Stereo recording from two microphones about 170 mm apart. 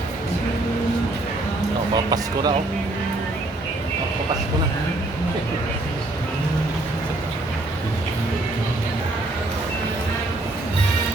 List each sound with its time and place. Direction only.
2.0 s speech: 20° right (ahead or behind)